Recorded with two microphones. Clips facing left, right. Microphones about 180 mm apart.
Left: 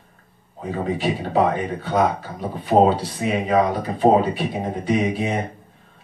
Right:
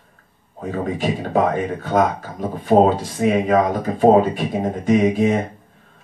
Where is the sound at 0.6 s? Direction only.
45° right (ahead or behind).